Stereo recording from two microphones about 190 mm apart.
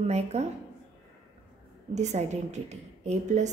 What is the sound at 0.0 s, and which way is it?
Speech, 35° right (ahead or behind).